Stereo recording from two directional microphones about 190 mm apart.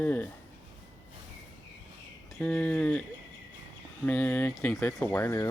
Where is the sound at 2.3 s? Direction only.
5° left (ahead or behind).